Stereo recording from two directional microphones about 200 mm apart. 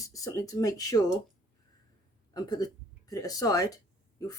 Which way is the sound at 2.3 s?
20° left (ahead or behind).